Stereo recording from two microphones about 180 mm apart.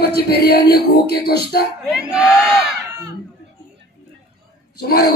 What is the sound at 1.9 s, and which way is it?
Music, 5° right (ahead or behind).